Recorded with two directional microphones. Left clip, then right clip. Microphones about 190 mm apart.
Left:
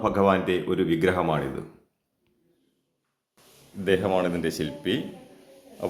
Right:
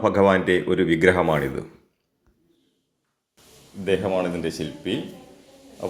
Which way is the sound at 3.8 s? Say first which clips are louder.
Right 1 dB; 20° left (ahead or behind).